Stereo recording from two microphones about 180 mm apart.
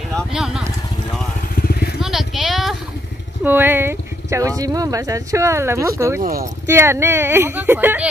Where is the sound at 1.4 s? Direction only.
55° left (ahead or behind).